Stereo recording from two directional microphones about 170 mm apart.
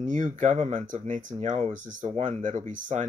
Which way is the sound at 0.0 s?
45° right (ahead or behind).